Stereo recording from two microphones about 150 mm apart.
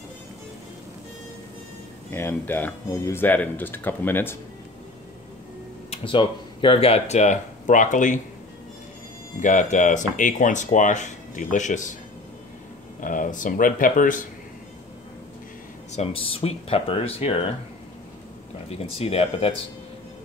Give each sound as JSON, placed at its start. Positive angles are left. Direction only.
{"t": 2.1, "sound": "speech", "side_deg": 15}
{"t": 5.9, "sound": "speech", "side_deg": 35}
{"t": 9.4, "sound": "speech", "side_deg": 55}
{"t": 13.0, "sound": "speech", "side_deg": 60}
{"t": 15.9, "sound": "speech", "side_deg": 45}
{"t": 18.7, "sound": "speech", "side_deg": 40}